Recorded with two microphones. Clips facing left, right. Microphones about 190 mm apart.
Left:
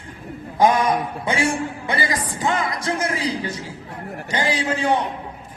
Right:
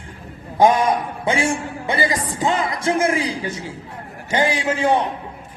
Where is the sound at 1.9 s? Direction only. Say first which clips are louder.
Right 5 dB; 20° right (ahead or behind).